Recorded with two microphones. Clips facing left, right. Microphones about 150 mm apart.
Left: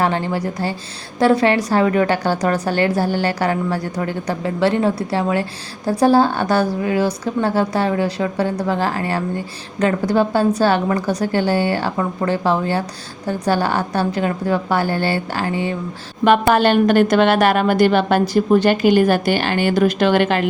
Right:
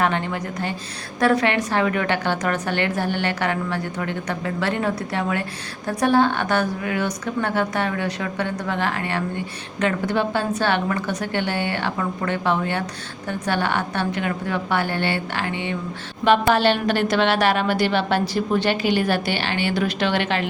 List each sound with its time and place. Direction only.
0.0 s a woman's voice: 30° left (ahead or behind)
16.2 s a woman's voice: 50° left (ahead or behind)